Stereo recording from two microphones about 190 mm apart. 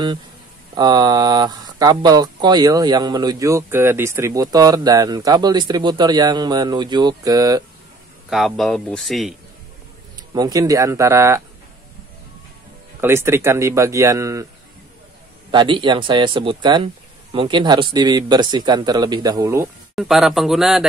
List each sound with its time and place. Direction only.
0.7 s speech: 20° right (ahead or behind)
8.3 s speech: centre (ahead or behind)
10.1 s speech: 20° right (ahead or behind)
13.0 s speech: 15° right (ahead or behind)
15.5 s speech: 25° right (ahead or behind)
20.0 s speech: centre (ahead or behind)